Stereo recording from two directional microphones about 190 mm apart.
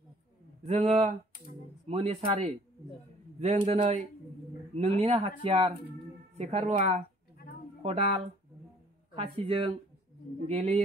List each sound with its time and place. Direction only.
0.7 s speech: 35° right (ahead or behind)